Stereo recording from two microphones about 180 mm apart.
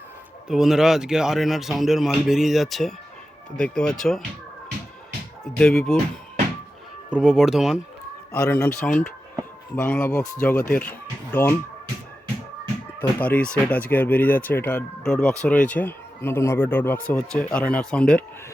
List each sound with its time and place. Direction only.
0.4 s a man's voice: centre (ahead or behind)
5.5 s a man's voice: 5° left (ahead or behind)
7.1 s a man's voice: 5° right (ahead or behind)
8.4 s speech: 15° left (ahead or behind)
8.8 s a sound: 5° left (ahead or behind)
9.7 s speech: 10° left (ahead or behind)
13.0 s a man's voice: 10° left (ahead or behind)